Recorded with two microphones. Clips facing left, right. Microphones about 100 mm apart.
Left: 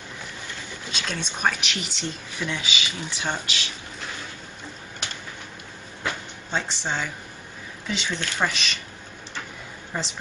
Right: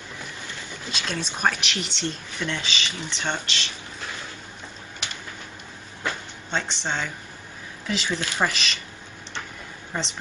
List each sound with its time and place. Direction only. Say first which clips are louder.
0.9 s speech: right 1 dB; centre (ahead or behind)
6.5 s speech: even; centre (ahead or behind)
9.9 s speech: even; centre (ahead or behind)